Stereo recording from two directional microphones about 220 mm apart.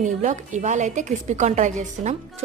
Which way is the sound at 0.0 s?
35° right (ahead or behind).